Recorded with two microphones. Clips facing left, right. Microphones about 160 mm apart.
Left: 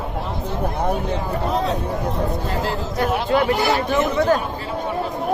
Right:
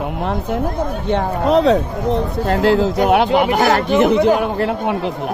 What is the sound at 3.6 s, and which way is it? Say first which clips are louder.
Speech: right 5 dB; 50° right (ahead or behind).